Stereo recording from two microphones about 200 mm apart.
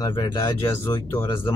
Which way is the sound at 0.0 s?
20° left (ahead or behind).